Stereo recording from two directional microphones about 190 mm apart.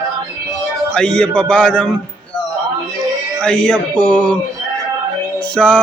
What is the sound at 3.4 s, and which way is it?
A man's voice, 5° left (ahead or behind).